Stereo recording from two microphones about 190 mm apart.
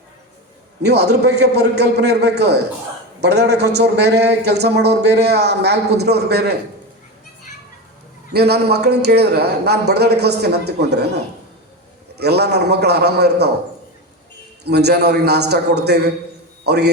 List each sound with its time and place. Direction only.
0.9 s a man's voice: 60° right (ahead or behind)
8.3 s a man's voice: 60° right (ahead or behind)
12.2 s a man's voice: 60° right (ahead or behind)
14.6 s a man's voice: 60° right (ahead or behind)